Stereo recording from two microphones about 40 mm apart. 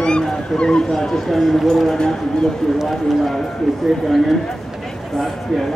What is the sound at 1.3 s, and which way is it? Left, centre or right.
Speech, centre.